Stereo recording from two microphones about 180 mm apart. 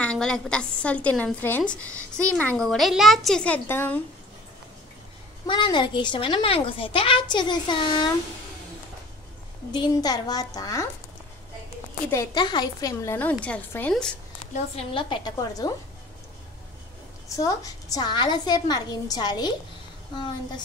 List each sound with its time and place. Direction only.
0.0 s a woman's voice: 5° left (ahead or behind)
5.5 s a woman's voice: 25° left (ahead or behind)
9.7 s a woman's voice: 25° left (ahead or behind)
12.1 s a woman's voice: 20° left (ahead or behind)
14.4 s a woman's voice: 35° left (ahead or behind)
17.4 s a woman's voice: 20° left (ahead or behind)